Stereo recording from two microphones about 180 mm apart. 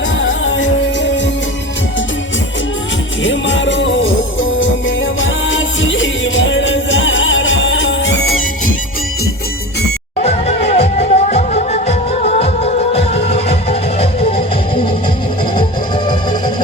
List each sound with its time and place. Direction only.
0.2 s music: 90° left
3.2 s music: 90° left
10.2 s music: 35° left (ahead or behind)